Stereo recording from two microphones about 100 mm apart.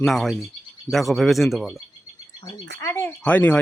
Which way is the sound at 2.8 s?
30° left (ahead or behind).